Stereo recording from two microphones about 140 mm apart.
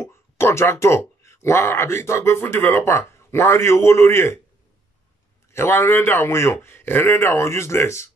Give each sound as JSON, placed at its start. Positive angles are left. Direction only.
{"t": 0.0, "sound": "speech", "side_deg": 20}
{"t": 5.5, "sound": "a man's voice", "side_deg": 15}